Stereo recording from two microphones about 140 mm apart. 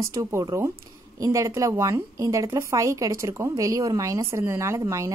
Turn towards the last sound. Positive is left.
turn(degrees=-20)  # may be behind; listen again after turning